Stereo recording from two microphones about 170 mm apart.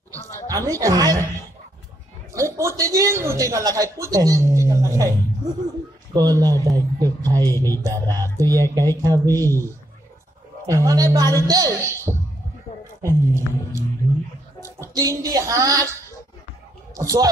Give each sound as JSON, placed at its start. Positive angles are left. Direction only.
{"t": 0.5, "sound": "speech", "side_deg": -20}
{"t": 2.3, "sound": "a man's voice", "side_deg": -20}
{"t": 6.1, "sound": "speech", "side_deg": -25}
{"t": 10.7, "sound": "speech", "side_deg": -20}
{"t": 13.0, "sound": "a sound", "side_deg": -15}
{"t": 14.6, "sound": "speech", "side_deg": -20}
{"t": 16.9, "sound": "speech", "side_deg": -20}